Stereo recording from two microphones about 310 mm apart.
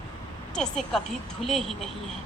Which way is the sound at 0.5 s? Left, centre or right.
Centre.